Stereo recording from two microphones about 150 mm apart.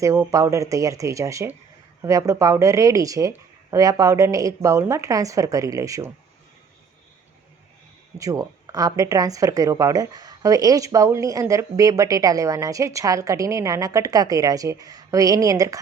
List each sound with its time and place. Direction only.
0.0 s speech: 20° right (ahead or behind)
8.2 s speech: 20° right (ahead or behind)